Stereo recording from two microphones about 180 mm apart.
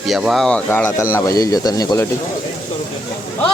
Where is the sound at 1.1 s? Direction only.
20° left (ahead or behind).